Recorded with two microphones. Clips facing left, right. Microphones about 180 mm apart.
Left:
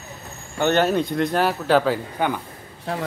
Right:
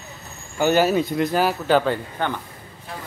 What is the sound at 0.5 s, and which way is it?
Speech, 5° right (ahead or behind).